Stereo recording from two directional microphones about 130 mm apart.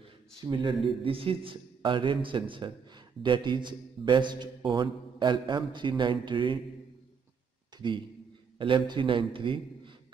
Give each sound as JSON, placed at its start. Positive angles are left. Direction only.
{"t": 0.4, "sound": "a man's voice", "side_deg": -35}
{"t": 7.7, "sound": "a sound", "side_deg": -35}
{"t": 8.5, "sound": "a man's voice", "side_deg": -40}